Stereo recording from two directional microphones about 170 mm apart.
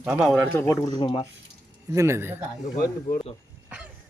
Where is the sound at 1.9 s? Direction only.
15° right (ahead or behind).